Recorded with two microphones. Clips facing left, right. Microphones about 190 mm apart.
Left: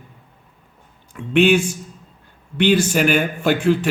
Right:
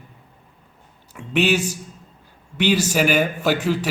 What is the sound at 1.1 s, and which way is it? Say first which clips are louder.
Speech: left 5 dB; 5° right (ahead or behind).